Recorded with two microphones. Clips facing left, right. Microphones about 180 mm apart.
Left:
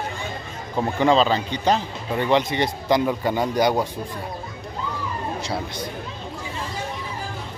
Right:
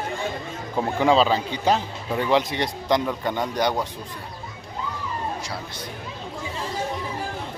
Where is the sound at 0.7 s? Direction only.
5° right (ahead or behind); by 3.9 s 10° left (ahead or behind).